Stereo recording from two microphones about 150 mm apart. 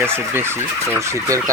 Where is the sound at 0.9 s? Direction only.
20° right (ahead or behind).